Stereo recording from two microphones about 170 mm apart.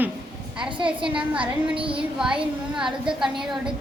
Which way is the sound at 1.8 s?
30° right (ahead or behind).